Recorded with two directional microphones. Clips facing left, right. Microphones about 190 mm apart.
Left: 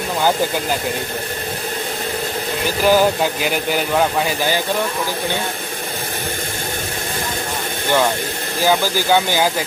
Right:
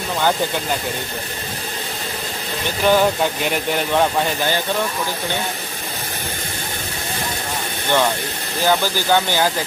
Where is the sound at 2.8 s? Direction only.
5° left (ahead or behind).